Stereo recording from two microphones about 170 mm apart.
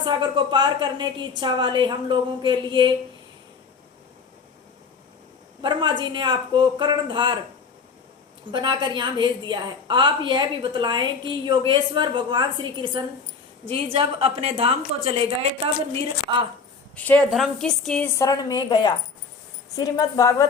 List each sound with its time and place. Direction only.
0.0 s a woman's voice: 25° right (ahead or behind)
5.6 s a woman's voice: 30° right (ahead or behind)
8.5 s a woman's voice: 25° right (ahead or behind)
16.9 s a woman's voice: 10° left (ahead or behind)
18.1 s a woman's voice: 20° left (ahead or behind)